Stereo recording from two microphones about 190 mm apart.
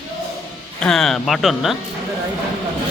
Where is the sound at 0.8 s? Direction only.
Centre (ahead or behind).